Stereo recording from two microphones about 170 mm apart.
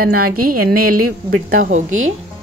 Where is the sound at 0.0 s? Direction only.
60° right (ahead or behind).